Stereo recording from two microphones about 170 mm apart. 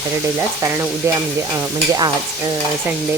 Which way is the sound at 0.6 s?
15° right (ahead or behind).